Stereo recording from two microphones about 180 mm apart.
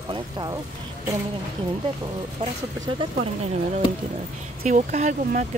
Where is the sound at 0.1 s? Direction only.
25° right (ahead or behind).